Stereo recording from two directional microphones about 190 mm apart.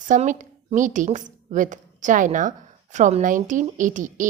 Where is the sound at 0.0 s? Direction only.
40° right (ahead or behind).